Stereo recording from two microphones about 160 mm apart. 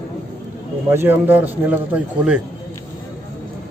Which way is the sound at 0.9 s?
15° right (ahead or behind).